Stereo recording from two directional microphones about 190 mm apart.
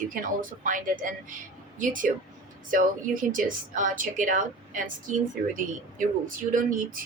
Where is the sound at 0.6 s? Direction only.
45° right (ahead or behind).